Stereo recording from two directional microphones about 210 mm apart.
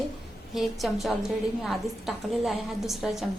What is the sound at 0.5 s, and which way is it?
A woman's voice, centre (ahead or behind).